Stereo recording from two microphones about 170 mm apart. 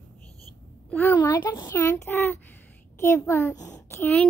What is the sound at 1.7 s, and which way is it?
A child's voice, 15° left (ahead or behind).